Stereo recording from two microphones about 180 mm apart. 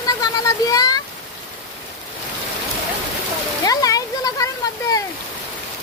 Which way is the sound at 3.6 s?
20° left (ahead or behind).